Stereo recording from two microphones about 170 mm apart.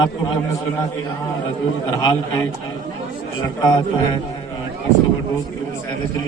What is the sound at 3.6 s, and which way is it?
Speech, 25° left (ahead or behind).